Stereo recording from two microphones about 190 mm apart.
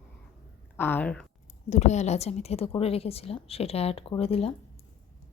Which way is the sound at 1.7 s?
35° left (ahead or behind).